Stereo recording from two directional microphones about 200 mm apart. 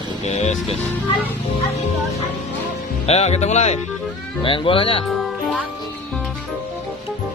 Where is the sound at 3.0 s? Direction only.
35° left (ahead or behind).